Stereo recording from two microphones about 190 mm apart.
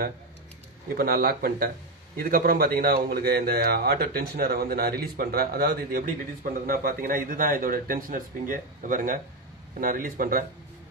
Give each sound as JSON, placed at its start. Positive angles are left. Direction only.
{"t": 0.9, "sound": "speech", "side_deg": -55}